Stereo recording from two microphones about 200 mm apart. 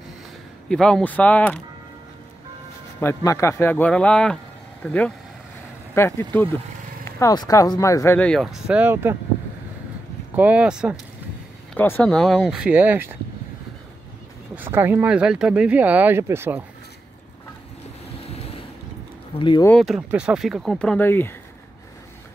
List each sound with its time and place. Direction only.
0.7 s speech: 5° left (ahead or behind)
3.0 s speech: 15° left (ahead or behind); by 9.1 s 10° right (ahead or behind)
10.3 s speech: 5° right (ahead or behind)
11.7 s speech: 10° left (ahead or behind); by 13.1 s 10° right (ahead or behind)
14.5 s speech: 10° right (ahead or behind)
18.2 s vehicle: 30° left (ahead or behind)
19.3 s speech: 25° left (ahead or behind)
19.6 s speech: 5° left (ahead or behind)